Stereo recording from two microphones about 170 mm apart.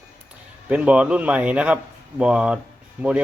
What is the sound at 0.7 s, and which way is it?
Speech, 5° right (ahead or behind).